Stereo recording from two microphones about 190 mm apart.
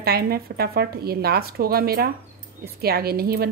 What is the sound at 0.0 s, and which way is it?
A woman's voice, 55° right (ahead or behind).